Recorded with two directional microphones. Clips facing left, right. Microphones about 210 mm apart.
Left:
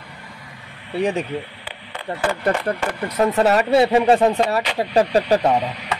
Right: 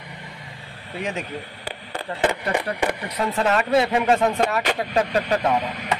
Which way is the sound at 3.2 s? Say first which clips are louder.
Left 6 dB; 40° left (ahead or behind).